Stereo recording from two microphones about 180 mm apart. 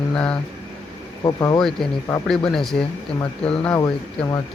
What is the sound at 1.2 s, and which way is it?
Speech, 20° left (ahead or behind).